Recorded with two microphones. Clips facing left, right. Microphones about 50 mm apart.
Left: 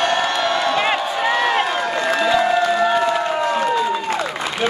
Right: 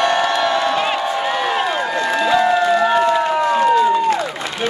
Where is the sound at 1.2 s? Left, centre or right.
Centre.